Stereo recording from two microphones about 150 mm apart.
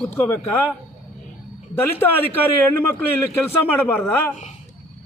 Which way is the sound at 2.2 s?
15° left (ahead or behind).